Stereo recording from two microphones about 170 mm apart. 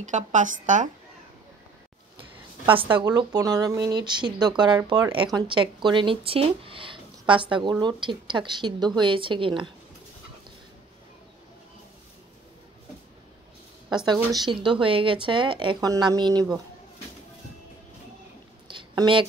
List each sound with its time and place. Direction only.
0.1 s speech: 45° right (ahead or behind)
3.0 s speech: 25° right (ahead or behind)
14.0 s speech: 25° right (ahead or behind)
18.7 s a sound: 30° right (ahead or behind)